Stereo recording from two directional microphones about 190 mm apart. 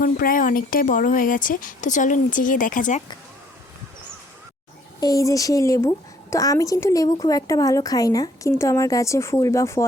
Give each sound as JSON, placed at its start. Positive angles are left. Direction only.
{"t": 0.0, "sound": "speech", "side_deg": 50}
{"t": 4.9, "sound": "a woman's voice", "side_deg": 20}